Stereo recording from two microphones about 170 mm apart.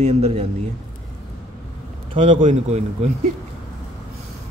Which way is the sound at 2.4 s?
45° right (ahead or behind).